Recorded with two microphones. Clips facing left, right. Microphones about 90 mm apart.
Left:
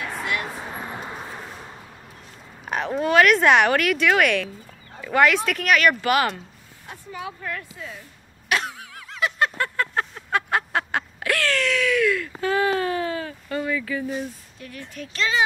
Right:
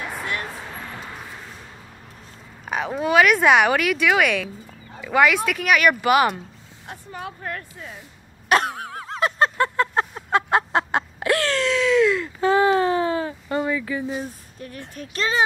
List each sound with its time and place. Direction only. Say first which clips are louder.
0.6 s vehicle: left 2 dB; 20° left (ahead or behind)
2.6 s speech: even; 5° right (ahead or behind)
6.9 s vehicle: even; 50° right (ahead or behind)
8.5 s cough: right 6 dB; 50° right (ahead or behind)
8.9 s a sound: right 1 dB; 35° right (ahead or behind)
9.6 s a sound: right 4 dB; 25° right (ahead or behind)
14.1 s speech: even; 35° right (ahead or behind)